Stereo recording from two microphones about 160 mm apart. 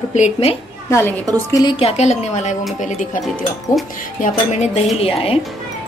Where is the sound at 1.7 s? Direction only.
40° left (ahead or behind).